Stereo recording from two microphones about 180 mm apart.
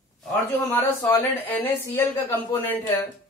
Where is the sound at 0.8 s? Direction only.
15° left (ahead or behind).